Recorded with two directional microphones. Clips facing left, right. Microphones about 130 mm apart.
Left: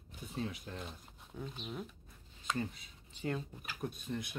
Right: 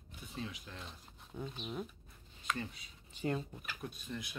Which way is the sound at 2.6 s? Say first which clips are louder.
Left 4 dB; 50° left (ahead or behind).